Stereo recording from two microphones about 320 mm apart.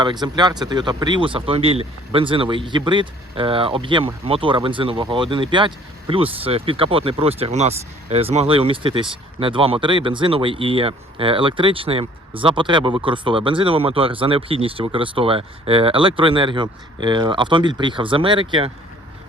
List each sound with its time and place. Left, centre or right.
0.0 s speech: centre